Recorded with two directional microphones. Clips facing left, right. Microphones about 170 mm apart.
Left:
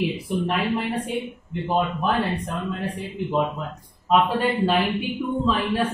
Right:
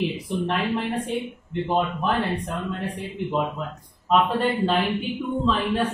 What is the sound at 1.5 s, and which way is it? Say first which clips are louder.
Speech: even; 5° left (ahead or behind).